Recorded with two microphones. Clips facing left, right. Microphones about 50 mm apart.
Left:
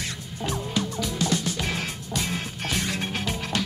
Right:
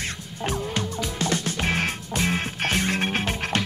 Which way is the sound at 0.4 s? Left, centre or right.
Right.